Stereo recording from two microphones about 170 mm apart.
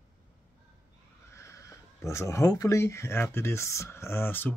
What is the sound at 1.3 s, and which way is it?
Speech, 15° left (ahead or behind).